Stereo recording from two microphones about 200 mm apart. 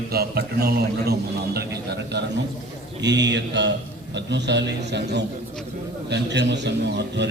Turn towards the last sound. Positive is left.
turn(degrees=-60)  # may be behind; listen again after turning